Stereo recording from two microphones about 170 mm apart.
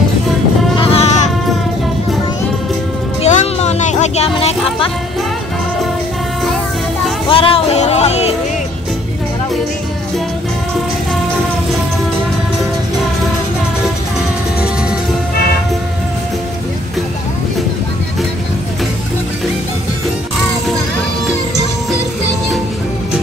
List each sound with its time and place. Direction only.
0.7 s sheep: 35° left (ahead or behind)
3.2 s music: 40° left (ahead or behind)
7.2 s music: 30° left (ahead or behind)